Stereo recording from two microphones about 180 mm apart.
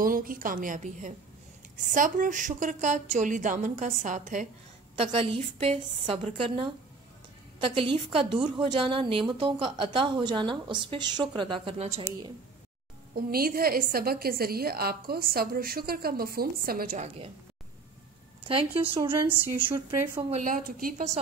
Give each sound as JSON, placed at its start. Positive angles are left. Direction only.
{"t": 0.0, "sound": "a woman's voice", "side_deg": -50}
{"t": 4.9, "sound": "a woman's voice", "side_deg": -30}
{"t": 13.1, "sound": "a woman's voice", "side_deg": -55}
{"t": 18.5, "sound": "a woman's voice", "side_deg": -30}
{"t": 19.1, "sound": "a woman's voice", "side_deg": -15}
{"t": 20.2, "sound": "a woman's voice", "side_deg": -45}